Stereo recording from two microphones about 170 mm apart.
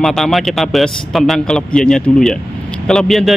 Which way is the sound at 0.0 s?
Centre (ahead or behind).